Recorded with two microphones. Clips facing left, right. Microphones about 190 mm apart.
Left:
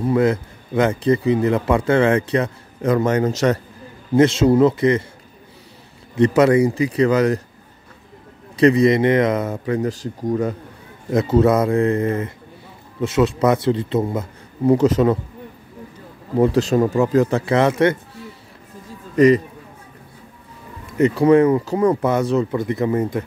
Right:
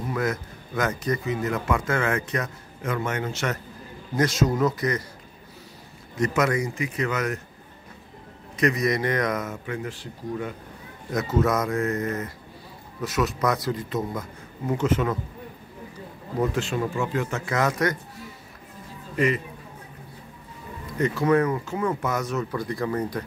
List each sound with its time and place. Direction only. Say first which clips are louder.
0.1 s speech: left 9 dB; 30° left (ahead or behind)
4.1 s speech: left 9 dB; 25° left (ahead or behind)
6.1 s speech: left 10 dB; 30° left (ahead or behind)
8.5 s speech: left 10 dB; 30° left (ahead or behind)
11.1 s speech: left 8 dB; 30° left (ahead or behind)
16.3 s speech: left 10 dB; 35° left (ahead or behind)
19.1 s a man's voice: left 11 dB; 35° left (ahead or behind)
21.0 s speech: left 8 dB; 30° left (ahead or behind)